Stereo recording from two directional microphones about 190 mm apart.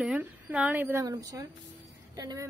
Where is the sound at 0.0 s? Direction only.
5° right (ahead or behind).